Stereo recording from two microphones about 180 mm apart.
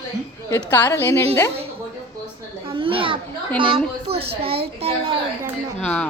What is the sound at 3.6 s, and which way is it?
A woman's voice, 30° right (ahead or behind).